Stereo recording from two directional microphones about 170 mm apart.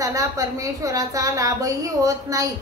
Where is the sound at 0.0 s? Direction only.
20° right (ahead or behind).